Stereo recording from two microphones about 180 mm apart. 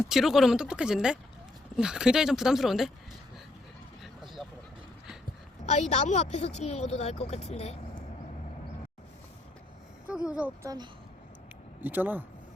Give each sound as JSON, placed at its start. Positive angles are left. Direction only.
{"t": 0.1, "sound": "speech", "side_deg": 0}
{"t": 4.0, "sound": "vehicle", "side_deg": 0}
{"t": 5.6, "sound": "speech", "side_deg": 40}
{"t": 10.2, "sound": "speech", "side_deg": -5}
{"t": 11.8, "sound": "speech", "side_deg": -10}